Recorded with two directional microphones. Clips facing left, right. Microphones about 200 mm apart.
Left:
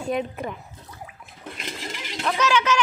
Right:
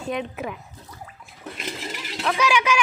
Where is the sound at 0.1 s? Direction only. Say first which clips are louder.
Left 1 dB; centre (ahead or behind).